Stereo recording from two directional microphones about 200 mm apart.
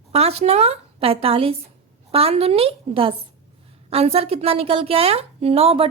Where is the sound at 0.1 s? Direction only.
30° right (ahead or behind).